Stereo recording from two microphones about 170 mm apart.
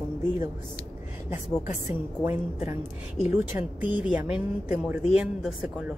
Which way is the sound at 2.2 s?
15° right (ahead or behind).